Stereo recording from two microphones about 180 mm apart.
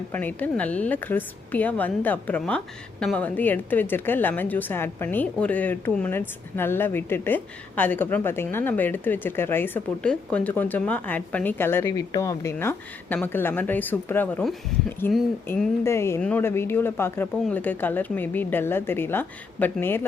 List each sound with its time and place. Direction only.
0.1 s a woman's voice: 10° left (ahead or behind)
15.8 s a woman's voice: 15° left (ahead or behind)